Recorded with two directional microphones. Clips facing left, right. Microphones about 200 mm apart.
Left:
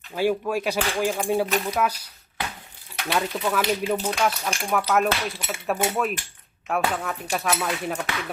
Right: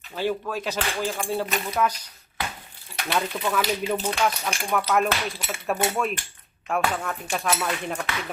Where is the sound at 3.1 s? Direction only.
5° left (ahead or behind).